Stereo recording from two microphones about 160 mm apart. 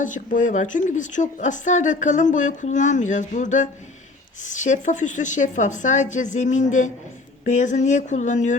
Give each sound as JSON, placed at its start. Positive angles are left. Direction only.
{"t": 0.0, "sound": "a woman's voice", "side_deg": 55}